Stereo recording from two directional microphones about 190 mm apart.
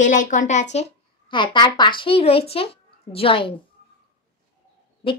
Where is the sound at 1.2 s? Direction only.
25° left (ahead or behind).